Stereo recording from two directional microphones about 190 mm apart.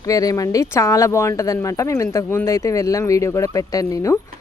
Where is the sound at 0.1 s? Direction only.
20° left (ahead or behind).